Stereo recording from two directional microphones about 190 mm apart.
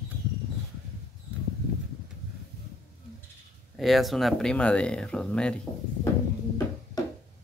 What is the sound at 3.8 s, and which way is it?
Speech, centre (ahead or behind).